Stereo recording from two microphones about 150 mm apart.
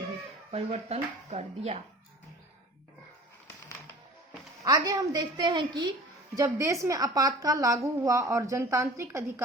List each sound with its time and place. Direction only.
0.5 s speech: 45° right (ahead or behind)
4.6 s a woman's voice: 25° right (ahead or behind)